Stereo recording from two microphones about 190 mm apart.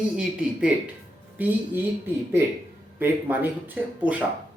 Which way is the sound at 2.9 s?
10° right (ahead or behind).